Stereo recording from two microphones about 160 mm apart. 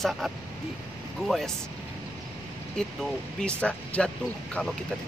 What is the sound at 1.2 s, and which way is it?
Speech, centre (ahead or behind).